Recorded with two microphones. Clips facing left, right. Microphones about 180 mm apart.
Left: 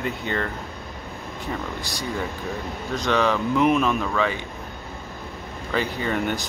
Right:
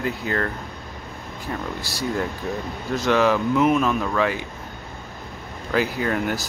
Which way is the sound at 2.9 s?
10° right (ahead or behind).